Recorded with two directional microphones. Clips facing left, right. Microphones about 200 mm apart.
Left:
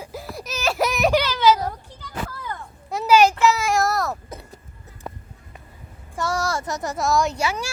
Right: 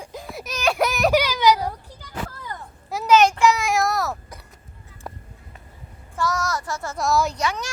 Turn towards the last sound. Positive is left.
turn(degrees=10)  # may be behind; listen again after turning